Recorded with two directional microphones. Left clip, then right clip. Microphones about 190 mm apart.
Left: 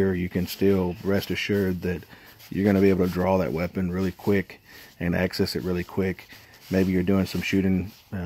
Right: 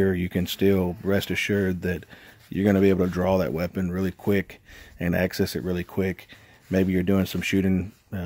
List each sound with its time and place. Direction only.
0.0 s speech: 20° right (ahead or behind)